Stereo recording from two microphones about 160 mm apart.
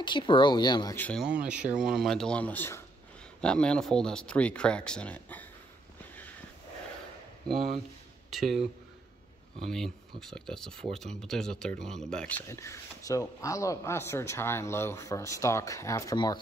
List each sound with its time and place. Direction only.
0.0 s speech: 30° left (ahead or behind)
0.9 s speech: 10° left (ahead or behind)
1.4 s speech: 5° right (ahead or behind); by 5.5 s 10° left (ahead or behind)
8.3 s speech: centre (ahead or behind); by 16.3 s 20° left (ahead or behind)